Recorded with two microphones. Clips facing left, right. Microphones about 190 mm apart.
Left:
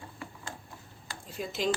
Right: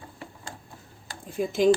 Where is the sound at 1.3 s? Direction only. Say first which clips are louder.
Right 10 dB; 50° right (ahead or behind).